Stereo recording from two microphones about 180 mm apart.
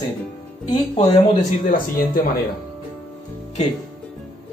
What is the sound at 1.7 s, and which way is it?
Speech, 50° left (ahead or behind).